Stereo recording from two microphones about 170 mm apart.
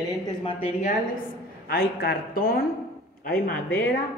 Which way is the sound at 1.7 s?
65° left (ahead or behind).